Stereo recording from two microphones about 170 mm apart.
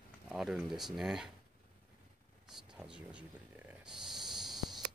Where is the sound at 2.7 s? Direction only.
5° right (ahead or behind).